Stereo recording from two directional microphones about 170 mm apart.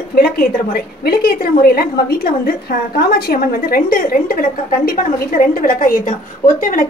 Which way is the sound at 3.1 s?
60° left (ahead or behind).